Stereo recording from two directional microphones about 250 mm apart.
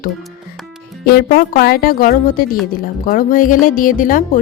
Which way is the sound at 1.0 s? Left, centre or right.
Left.